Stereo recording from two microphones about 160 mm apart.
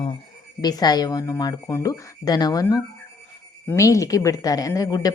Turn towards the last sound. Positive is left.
turn(degrees=20)  # may be behind; listen again after turning